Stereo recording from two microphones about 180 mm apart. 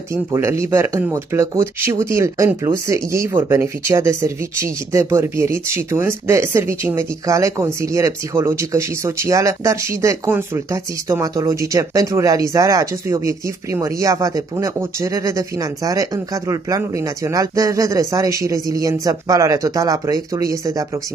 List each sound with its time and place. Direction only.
0.1 s speech: 15° right (ahead or behind)